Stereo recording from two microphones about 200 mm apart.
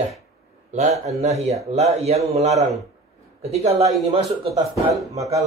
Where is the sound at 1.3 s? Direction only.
15° right (ahead or behind).